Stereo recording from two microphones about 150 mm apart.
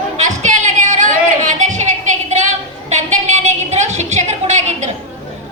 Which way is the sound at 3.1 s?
50° right (ahead or behind).